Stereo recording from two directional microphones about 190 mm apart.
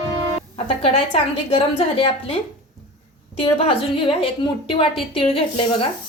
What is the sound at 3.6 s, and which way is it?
A woman's voice, 30° left (ahead or behind).